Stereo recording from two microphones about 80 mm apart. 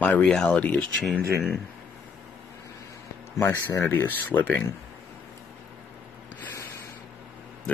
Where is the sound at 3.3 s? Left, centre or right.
Left.